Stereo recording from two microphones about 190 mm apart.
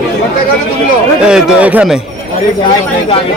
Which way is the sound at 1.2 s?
5° right (ahead or behind).